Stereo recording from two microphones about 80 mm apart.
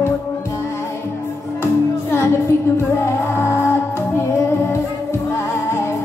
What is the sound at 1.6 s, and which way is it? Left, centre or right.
Music, left.